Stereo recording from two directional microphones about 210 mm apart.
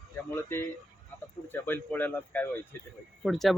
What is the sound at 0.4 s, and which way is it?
Speech, 10° left (ahead or behind).